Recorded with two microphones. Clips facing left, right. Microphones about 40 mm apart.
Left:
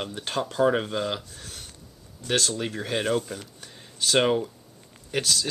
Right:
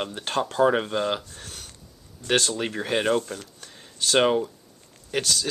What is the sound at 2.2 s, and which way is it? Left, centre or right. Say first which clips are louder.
Speech: right 2 dB; centre.